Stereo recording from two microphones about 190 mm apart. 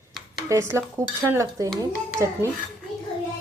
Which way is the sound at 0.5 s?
15° right (ahead or behind).